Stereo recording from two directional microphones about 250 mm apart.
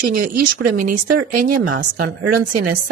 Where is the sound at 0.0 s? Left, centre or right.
Right.